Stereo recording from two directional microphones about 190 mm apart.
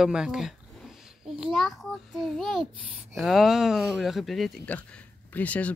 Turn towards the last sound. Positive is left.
turn(degrees=5)  # may be behind; listen again after turning